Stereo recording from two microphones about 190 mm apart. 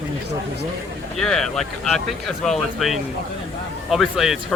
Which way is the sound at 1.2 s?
Centre (ahead or behind).